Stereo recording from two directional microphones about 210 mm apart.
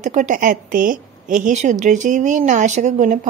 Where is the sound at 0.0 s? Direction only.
35° right (ahead or behind).